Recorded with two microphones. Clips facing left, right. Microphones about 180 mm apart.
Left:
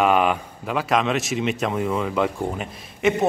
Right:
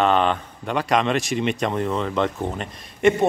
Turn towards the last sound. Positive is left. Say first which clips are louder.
# right 3 dB
turn(degrees=0)  # may be behind; listen again after turning